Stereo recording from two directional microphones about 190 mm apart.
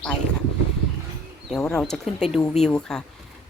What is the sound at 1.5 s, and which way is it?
A woman's voice, 5° left (ahead or behind).